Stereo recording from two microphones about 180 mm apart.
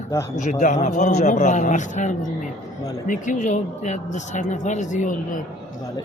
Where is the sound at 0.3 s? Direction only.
45° left (ahead or behind).